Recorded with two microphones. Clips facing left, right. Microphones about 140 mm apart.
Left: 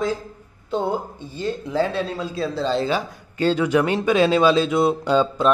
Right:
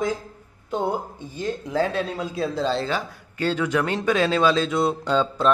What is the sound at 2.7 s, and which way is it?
Speech, 15° left (ahead or behind).